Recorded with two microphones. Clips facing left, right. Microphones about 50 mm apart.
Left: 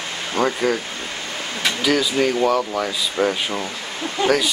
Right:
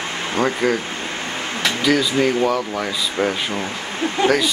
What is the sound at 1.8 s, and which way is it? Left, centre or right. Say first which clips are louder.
Speech: right 1 dB; centre.